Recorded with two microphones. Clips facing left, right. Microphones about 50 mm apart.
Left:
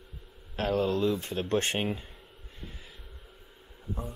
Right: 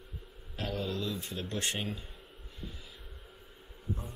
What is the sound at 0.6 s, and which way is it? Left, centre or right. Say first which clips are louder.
Speech: left 9 dB; left.